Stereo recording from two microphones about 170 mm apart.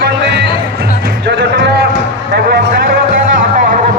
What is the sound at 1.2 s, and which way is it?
Music, 90° right.